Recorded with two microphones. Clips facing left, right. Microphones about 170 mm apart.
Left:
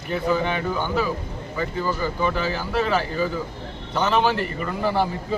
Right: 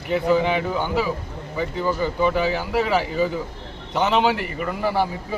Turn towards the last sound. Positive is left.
turn(degrees=-10)  # may be behind; listen again after turning